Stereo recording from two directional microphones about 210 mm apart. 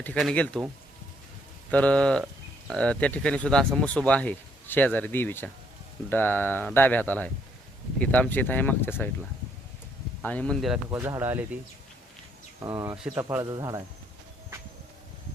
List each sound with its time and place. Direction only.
0.0 s speech: 5° left (ahead or behind)
1.7 s speech: 5° left (ahead or behind)
10.2 s speech: 5° left (ahead or behind)
10.9 s speech: 15° right (ahead or behind)
12.6 s speech: 15° right (ahead or behind)
13.0 s speech: 5° right (ahead or behind)
13.2 s speech: 15° right (ahead or behind)